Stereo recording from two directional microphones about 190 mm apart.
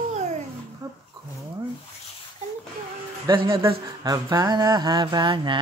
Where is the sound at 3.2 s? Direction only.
30° right (ahead or behind).